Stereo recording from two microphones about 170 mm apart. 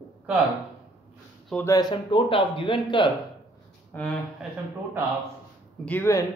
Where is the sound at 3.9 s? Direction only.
10° left (ahead or behind).